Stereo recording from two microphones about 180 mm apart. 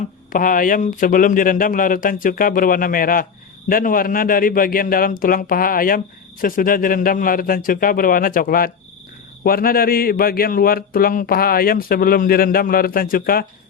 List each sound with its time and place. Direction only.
0.3 s speech: 50° left (ahead or behind)